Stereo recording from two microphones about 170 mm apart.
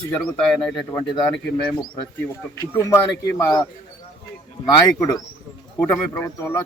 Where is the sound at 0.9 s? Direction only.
25° left (ahead or behind).